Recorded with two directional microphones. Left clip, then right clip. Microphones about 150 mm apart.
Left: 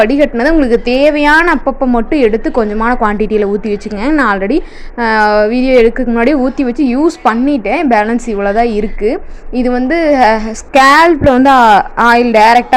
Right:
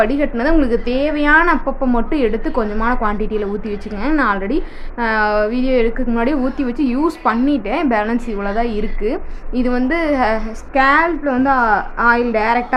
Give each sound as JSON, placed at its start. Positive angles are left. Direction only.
{"t": 0.0, "sound": "a woman's voice", "side_deg": 40}
{"t": 10.8, "sound": "a woman's voice", "side_deg": 55}
{"t": 11.3, "sound": "a woman's voice", "side_deg": 40}